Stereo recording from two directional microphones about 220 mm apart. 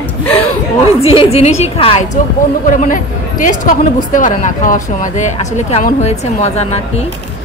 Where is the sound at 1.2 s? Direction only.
30° left (ahead or behind).